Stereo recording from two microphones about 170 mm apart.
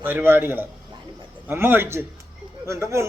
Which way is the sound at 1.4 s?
10° right (ahead or behind).